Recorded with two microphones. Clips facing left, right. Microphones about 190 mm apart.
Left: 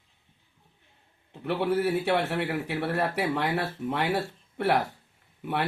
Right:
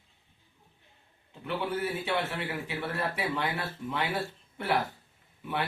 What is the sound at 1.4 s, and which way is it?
A man's voice, 65° left (ahead or behind).